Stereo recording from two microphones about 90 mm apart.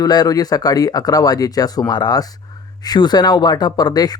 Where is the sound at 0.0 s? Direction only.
45° left (ahead or behind).